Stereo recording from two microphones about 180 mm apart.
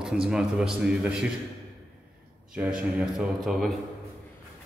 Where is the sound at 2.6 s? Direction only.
5° right (ahead or behind).